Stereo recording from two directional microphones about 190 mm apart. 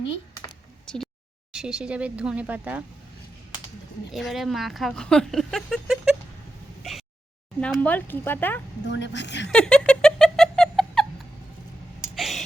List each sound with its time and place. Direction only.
0.9 s a sound: 5° left (ahead or behind)
1.5 s speech: 5° right (ahead or behind)
4.1 s speech: centre (ahead or behind)
7.6 s speech: 10° left (ahead or behind)
8.9 s a woman's voice: 70° left (ahead or behind)
9.5 s a sound: 5° left (ahead or behind)
12.1 s gasp: centre (ahead or behind)